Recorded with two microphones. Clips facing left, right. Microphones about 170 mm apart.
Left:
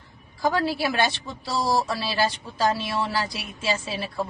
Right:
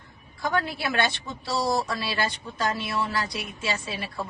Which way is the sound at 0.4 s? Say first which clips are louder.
Left 4 dB; 25° left (ahead or behind).